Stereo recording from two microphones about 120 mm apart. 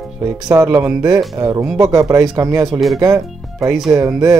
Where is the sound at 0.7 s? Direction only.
15° right (ahead or behind).